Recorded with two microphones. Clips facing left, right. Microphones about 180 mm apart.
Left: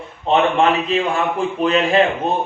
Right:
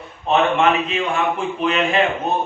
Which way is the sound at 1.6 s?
35° left (ahead or behind).